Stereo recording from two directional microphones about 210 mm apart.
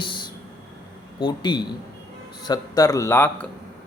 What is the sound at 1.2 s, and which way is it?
A man's voice, 20° left (ahead or behind).